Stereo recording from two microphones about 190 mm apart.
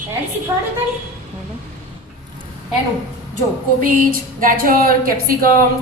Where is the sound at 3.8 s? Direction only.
50° right (ahead or behind).